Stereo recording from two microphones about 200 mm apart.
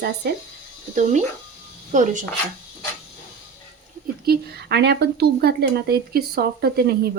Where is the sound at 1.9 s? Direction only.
40° right (ahead or behind).